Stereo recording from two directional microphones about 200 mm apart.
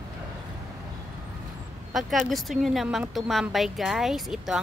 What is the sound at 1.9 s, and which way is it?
A woman's voice, centre (ahead or behind).